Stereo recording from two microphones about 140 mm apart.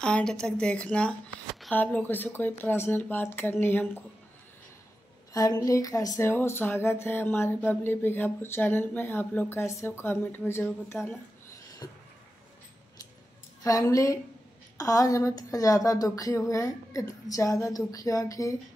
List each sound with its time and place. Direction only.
0.0 s speech: 5° left (ahead or behind)
5.3 s speech: 25° left (ahead or behind)
13.7 s speech: 25° left (ahead or behind)